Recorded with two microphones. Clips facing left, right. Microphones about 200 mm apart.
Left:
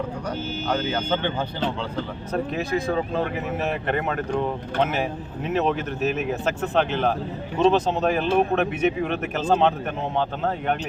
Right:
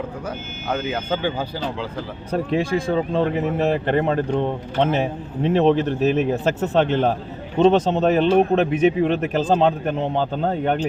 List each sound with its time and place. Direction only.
0.7 s speech: 5° right (ahead or behind)
2.3 s speech: 30° right (ahead or behind)